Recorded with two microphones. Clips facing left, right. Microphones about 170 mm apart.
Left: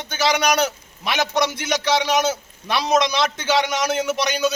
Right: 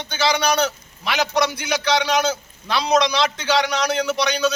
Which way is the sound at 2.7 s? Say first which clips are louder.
Right 1 dB; 20° left (ahead or behind).